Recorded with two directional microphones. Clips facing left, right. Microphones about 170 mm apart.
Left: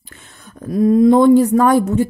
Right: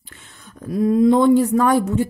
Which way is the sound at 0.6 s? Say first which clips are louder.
Left 4 dB; 45° left (ahead or behind).